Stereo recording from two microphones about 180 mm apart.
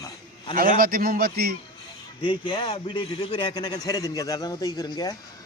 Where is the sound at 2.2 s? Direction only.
25° left (ahead or behind).